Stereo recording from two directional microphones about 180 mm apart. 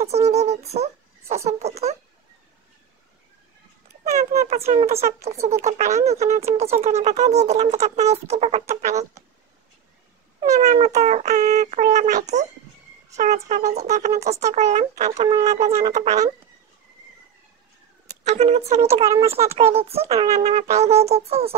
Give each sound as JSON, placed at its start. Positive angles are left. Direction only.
{"t": 0.0, "sound": "speech", "side_deg": -35}
{"t": 4.0, "sound": "speech", "side_deg": -40}
{"t": 10.6, "sound": "speech", "side_deg": -40}
{"t": 18.2, "sound": "speech", "side_deg": -40}